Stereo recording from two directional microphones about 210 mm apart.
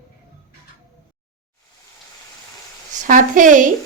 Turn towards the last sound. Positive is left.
turn(degrees=-40)  # may be behind; listen again after turning